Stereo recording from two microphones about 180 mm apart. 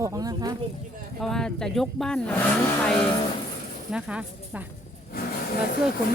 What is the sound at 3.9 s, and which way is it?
Speech, 5° right (ahead or behind).